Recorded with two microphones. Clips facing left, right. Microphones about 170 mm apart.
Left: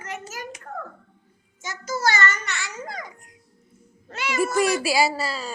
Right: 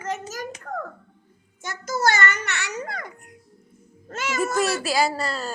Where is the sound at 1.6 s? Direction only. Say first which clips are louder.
Right 2 dB; 55° right (ahead or behind).